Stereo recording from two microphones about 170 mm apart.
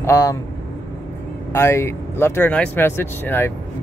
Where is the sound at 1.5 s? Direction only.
15° left (ahead or behind).